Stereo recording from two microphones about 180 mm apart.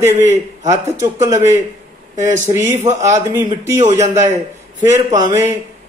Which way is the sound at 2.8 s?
40° right (ahead or behind).